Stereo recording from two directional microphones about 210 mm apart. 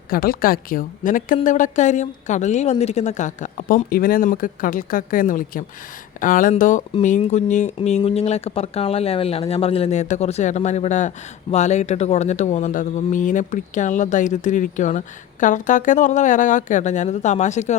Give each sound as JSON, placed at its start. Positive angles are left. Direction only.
{"t": 0.1, "sound": "speech", "side_deg": 45}